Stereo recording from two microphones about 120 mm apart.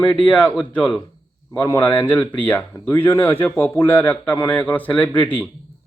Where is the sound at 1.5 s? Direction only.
20° left (ahead or behind).